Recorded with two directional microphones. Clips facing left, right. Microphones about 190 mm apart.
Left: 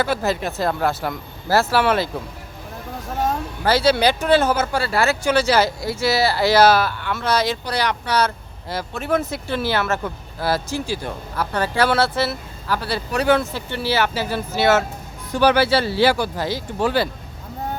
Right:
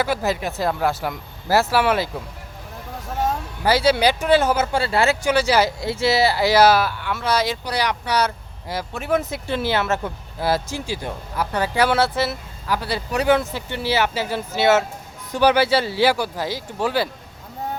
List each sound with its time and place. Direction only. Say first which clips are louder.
0.0 s speech: left 1 dB; 15° right (ahead or behind)
3.2 s speech: even; 15° right (ahead or behind)